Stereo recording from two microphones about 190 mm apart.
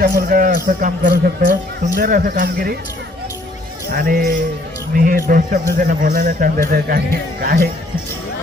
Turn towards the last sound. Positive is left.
turn(degrees=-55)  # may be behind; listen again after turning